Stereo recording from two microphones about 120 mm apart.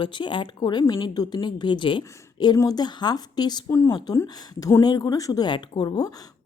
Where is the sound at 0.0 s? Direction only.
40° left (ahead or behind).